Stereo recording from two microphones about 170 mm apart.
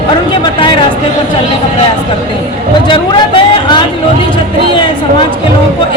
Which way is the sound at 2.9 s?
30° left (ahead or behind).